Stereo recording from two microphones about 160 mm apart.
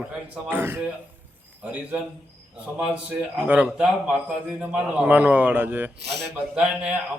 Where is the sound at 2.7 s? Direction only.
5° right (ahead or behind).